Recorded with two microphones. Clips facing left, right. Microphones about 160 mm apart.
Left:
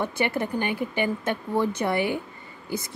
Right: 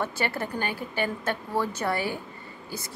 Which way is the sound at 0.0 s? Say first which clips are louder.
Left 3 dB; 15° left (ahead or behind).